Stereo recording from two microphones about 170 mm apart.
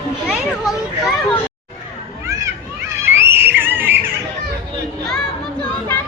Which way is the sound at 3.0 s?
10° right (ahead or behind).